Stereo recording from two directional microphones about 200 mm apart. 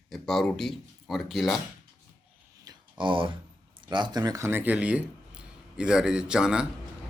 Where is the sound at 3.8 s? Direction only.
25° right (ahead or behind).